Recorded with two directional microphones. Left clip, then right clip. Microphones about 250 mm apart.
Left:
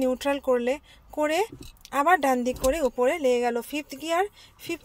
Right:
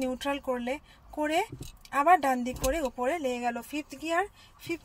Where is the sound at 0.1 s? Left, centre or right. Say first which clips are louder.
Left 7 dB; left.